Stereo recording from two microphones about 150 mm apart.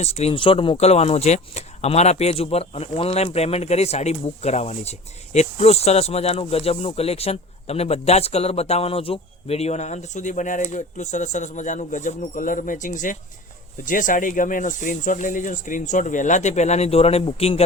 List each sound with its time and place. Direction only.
0.0 s speech: 45° left (ahead or behind)